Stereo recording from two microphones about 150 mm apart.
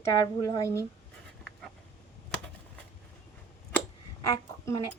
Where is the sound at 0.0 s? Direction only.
25° left (ahead or behind).